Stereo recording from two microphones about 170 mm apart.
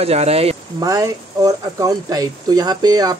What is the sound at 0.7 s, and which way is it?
Speech, 20° right (ahead or behind).